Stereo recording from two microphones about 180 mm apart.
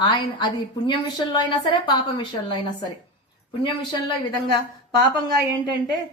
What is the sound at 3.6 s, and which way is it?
Speech, 25° left (ahead or behind).